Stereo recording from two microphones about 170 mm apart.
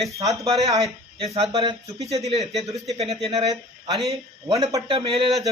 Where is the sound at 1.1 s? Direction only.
35° right (ahead or behind).